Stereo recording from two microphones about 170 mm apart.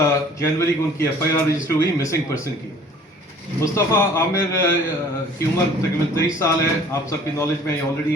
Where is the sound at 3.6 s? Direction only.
15° left (ahead or behind).